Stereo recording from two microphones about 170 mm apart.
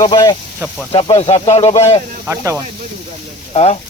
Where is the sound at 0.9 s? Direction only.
35° left (ahead or behind).